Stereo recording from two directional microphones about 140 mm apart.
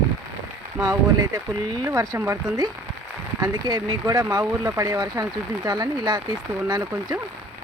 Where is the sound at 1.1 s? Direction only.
30° right (ahead or behind).